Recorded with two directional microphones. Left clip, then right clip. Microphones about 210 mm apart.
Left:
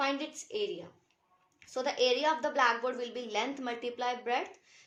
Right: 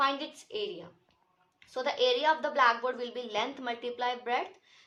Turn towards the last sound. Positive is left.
turn(degrees=45)  # may be behind; listen again after turning